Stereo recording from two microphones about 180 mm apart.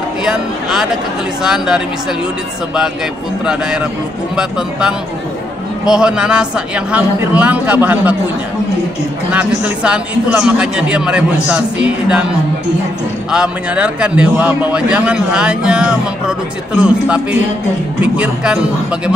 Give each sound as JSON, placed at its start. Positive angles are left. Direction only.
{"t": 0.2, "sound": "a man's voice", "side_deg": -5}
{"t": 3.4, "sound": "a man's voice", "side_deg": -5}
{"t": 9.3, "sound": "a man's voice", "side_deg": -5}
{"t": 13.3, "sound": "a man's voice", "side_deg": -5}